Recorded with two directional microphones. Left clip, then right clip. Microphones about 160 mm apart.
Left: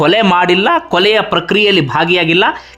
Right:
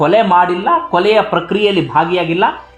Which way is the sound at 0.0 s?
30° left (ahead or behind).